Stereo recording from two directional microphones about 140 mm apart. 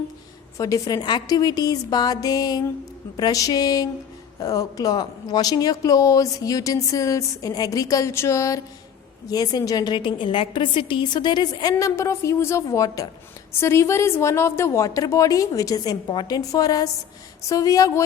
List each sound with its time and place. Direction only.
0.5 s speech: 25° left (ahead or behind)